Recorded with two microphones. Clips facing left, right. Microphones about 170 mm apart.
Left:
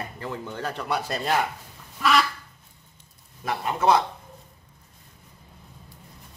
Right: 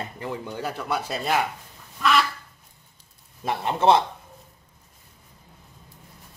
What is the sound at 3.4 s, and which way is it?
Speech, 25° right (ahead or behind).